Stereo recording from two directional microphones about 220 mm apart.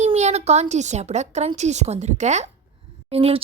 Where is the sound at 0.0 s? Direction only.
30° right (ahead or behind).